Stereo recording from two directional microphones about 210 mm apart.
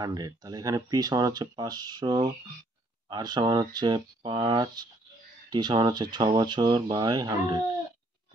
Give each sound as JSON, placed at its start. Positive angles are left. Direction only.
{"t": 0.0, "sound": "speech", "side_deg": -20}